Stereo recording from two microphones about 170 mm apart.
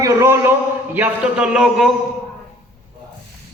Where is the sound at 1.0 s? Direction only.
5° right (ahead or behind).